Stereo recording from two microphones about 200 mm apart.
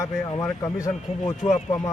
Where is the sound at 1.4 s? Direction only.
30° left (ahead or behind).